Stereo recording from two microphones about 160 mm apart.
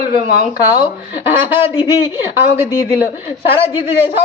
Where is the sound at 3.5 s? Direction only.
35° left (ahead or behind).